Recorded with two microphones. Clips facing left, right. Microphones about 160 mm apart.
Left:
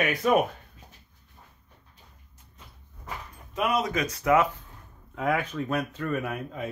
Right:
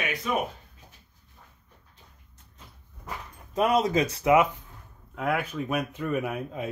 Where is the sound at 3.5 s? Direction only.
35° right (ahead or behind); by 4.6 s 15° right (ahead or behind).